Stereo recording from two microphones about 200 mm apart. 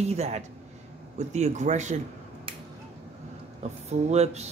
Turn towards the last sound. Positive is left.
turn(degrees=-35)  # may be behind; listen again after turning